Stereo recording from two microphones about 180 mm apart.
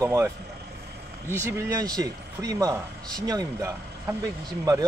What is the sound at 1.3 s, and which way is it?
Speech, 15° right (ahead or behind).